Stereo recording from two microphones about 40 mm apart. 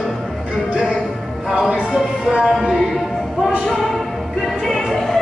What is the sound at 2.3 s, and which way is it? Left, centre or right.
Music, right.